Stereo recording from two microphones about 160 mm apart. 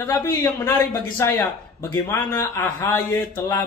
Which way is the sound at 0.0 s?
15° left (ahead or behind).